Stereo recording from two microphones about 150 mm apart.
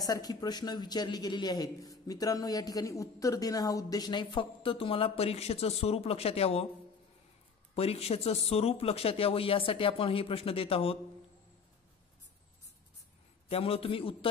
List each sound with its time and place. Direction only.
0.0 s speech: 25° left (ahead or behind); by 6.7 s 40° left (ahead or behind)
7.7 s speech: 40° left (ahead or behind)
13.5 s speech: 40° left (ahead or behind)